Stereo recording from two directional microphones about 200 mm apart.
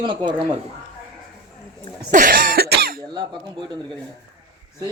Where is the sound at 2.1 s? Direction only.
40° right (ahead or behind).